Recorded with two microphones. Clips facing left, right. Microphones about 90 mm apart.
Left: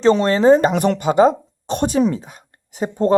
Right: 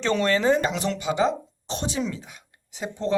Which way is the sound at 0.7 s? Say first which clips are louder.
Left 9 dB; 55° left (ahead or behind).